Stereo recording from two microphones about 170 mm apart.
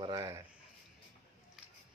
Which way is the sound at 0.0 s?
20° right (ahead or behind).